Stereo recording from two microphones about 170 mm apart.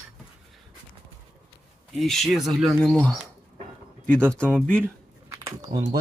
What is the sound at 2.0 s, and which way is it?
Speech, centre (ahead or behind).